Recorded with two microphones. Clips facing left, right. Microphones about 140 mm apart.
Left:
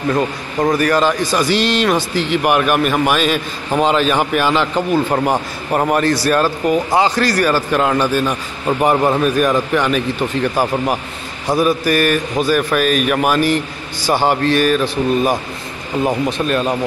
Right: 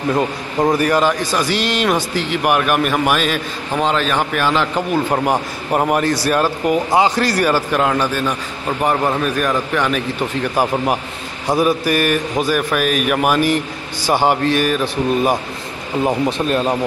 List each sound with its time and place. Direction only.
0.1 s a man's voice: 15° right (ahead or behind)
1.0 s a man's voice: 5° right (ahead or behind)
7.7 s a man's voice: centre (ahead or behind)
8.6 s a man's voice: 10° left (ahead or behind)
10.5 s a man's voice: 15° right (ahead or behind)
16.3 s speech: 25° right (ahead or behind)